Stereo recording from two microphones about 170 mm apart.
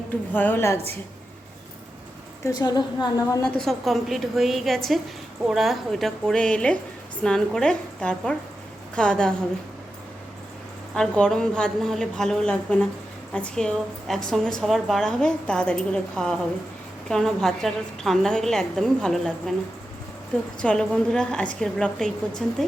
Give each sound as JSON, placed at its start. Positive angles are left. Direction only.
{"t": 0.3, "sound": "a woman's voice", "side_deg": 10}
{"t": 2.4, "sound": "a woman's voice", "side_deg": 20}
{"t": 3.4, "sound": "a woman's voice", "side_deg": 0}
{"t": 10.9, "sound": "a woman's voice", "side_deg": 5}
{"t": 20.6, "sound": "a woman's voice", "side_deg": 5}